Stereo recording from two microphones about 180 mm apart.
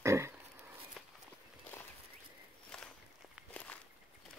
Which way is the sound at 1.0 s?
Centre (ahead or behind).